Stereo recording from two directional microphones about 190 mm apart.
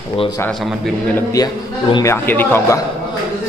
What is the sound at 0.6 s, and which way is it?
Speech, centre (ahead or behind).